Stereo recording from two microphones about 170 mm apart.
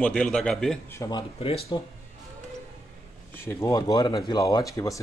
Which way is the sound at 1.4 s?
35° left (ahead or behind).